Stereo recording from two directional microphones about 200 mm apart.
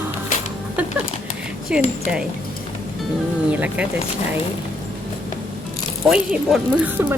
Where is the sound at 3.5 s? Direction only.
5° right (ahead or behind).